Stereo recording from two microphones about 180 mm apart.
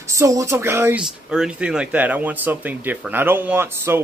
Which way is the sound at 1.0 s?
5° right (ahead or behind).